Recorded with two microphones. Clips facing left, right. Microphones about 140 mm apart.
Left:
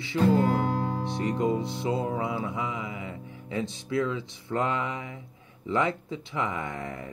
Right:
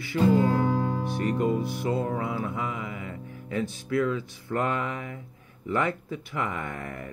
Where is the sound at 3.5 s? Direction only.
20° left (ahead or behind).